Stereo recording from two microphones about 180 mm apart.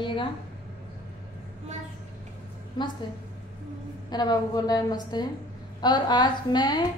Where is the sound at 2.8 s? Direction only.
25° left (ahead or behind).